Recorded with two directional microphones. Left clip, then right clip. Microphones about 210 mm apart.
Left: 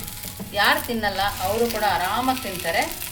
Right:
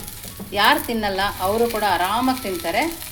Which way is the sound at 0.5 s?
30° right (ahead or behind).